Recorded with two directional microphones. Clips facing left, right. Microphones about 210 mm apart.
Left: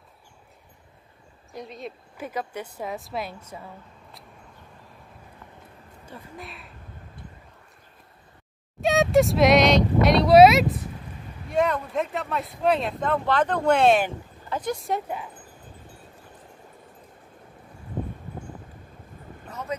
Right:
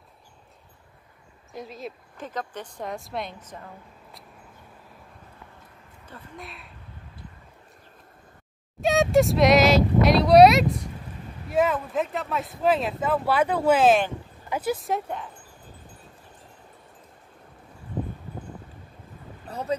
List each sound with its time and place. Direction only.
1.5 s speech: centre (ahead or behind)
2.2 s a woman's voice: 10° left (ahead or behind)
6.0 s speech: 10° left (ahead or behind)
6.4 s speech: centre (ahead or behind)
8.8 s speech: centre (ahead or behind)
19.5 s boat: 30° right (ahead or behind)